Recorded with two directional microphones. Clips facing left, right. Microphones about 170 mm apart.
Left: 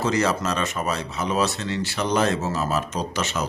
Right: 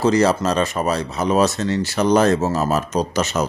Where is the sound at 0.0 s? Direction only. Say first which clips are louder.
Right 6 dB; 35° right (ahead or behind).